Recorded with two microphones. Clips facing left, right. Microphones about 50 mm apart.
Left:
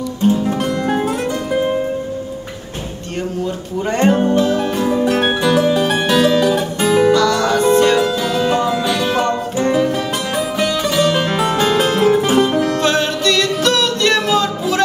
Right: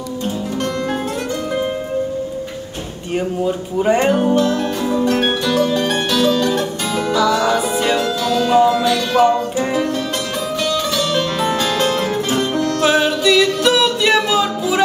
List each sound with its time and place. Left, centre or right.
1.5 s music: centre
3.4 s a sound: centre
4.4 s music: centre
6.0 s music: left
7.2 s music: centre
10.6 s music: centre
11.8 s music: centre
12.8 s music: centre